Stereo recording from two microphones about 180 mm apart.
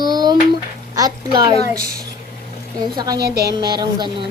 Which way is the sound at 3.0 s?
20° right (ahead or behind).